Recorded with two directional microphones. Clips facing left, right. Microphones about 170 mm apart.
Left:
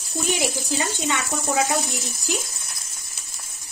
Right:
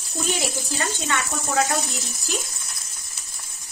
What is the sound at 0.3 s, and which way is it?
Speech, 15° left (ahead or behind).